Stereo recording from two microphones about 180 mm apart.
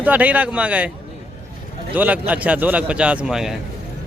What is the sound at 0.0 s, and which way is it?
Speech, 10° right (ahead or behind).